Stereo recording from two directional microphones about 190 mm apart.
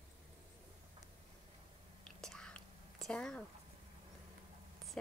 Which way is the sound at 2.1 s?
5° left (ahead or behind).